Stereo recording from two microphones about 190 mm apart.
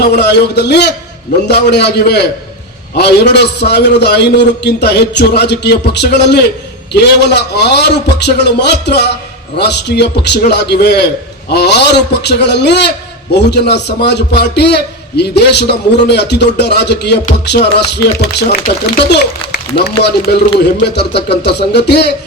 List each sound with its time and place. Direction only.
0.0 s a man's voice: 60° left (ahead or behind)